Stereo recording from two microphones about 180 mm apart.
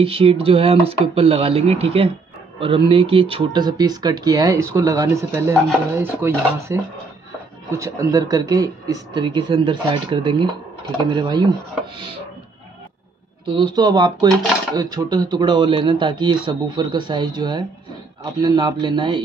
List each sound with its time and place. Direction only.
0.0 s speech: 30° right (ahead or behind)
13.5 s speech: 25° right (ahead or behind)